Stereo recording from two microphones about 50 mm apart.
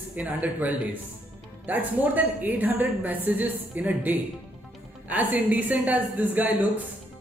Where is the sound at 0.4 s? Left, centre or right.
Right.